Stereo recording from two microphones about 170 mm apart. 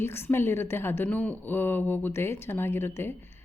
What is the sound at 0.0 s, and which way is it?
A woman's voice, 15° left (ahead or behind).